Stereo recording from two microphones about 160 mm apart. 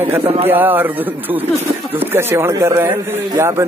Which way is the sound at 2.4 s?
15° right (ahead or behind).